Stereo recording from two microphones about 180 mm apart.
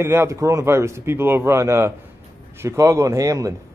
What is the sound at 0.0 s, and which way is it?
A man's voice, 15° right (ahead or behind).